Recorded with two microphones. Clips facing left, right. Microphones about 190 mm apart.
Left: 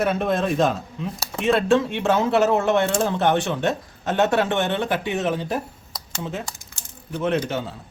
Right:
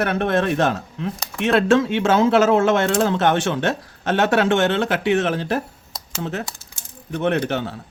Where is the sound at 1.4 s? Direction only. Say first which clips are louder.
Right 2 dB; 90° right.